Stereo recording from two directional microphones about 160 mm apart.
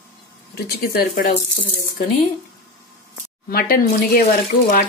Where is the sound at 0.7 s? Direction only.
80° left.